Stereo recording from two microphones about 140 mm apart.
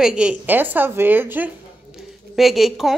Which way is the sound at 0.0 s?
5° right (ahead or behind).